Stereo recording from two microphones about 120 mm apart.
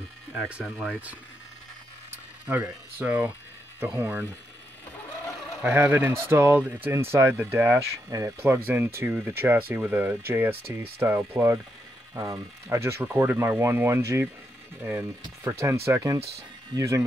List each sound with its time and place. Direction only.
2.4 s speech: 15° right (ahead or behind)
5.6 s speech: 15° right (ahead or behind)